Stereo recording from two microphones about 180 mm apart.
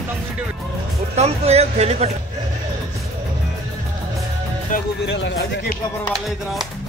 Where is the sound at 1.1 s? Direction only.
35° right (ahead or behind).